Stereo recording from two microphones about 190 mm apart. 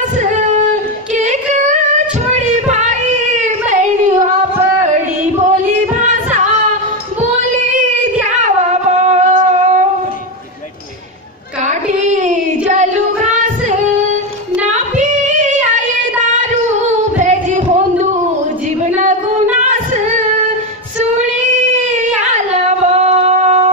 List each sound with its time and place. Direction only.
0.2 s a sound: 40° right (ahead or behind)
1.1 s singing: 40° right (ahead or behind)
4.8 s music: 40° right (ahead or behind)
9.0 s a sound: 35° right (ahead or behind)
11.6 s child singing: 40° right (ahead or behind)
15.0 s child singing: 40° right (ahead or behind)
17.2 s singing: 40° right (ahead or behind)
19.5 s singing: 40° right (ahead or behind)
22.3 s singing: 35° right (ahead or behind)